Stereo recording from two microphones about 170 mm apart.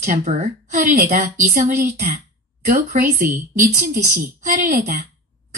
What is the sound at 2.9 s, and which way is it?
Speech, 50° right (ahead or behind).